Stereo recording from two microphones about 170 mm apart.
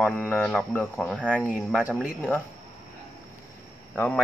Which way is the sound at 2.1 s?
10° left (ahead or behind).